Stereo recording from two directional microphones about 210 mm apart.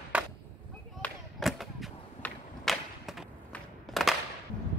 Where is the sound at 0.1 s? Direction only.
5° right (ahead or behind).